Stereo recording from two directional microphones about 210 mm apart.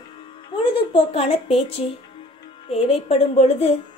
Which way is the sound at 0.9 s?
25° left (ahead or behind).